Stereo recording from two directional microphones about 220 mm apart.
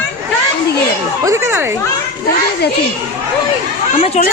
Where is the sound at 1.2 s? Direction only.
10° right (ahead or behind).